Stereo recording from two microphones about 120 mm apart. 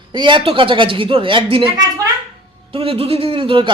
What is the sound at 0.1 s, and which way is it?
Speech, 40° right (ahead or behind).